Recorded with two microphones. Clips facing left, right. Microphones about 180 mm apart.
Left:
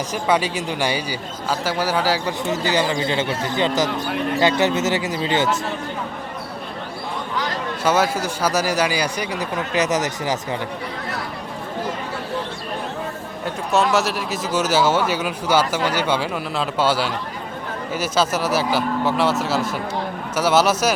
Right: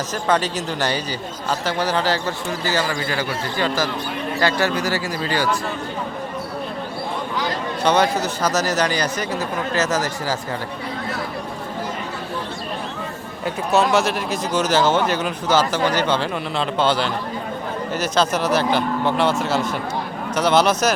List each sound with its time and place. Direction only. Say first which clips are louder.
0.1 s speech: even; 10° left (ahead or behind)
2.5 s speech: left 3 dB; 20° left (ahead or behind)
7.9 s speech: right 1 dB; 5° left (ahead or behind)
13.4 s speech: right 1 dB; centre (ahead or behind)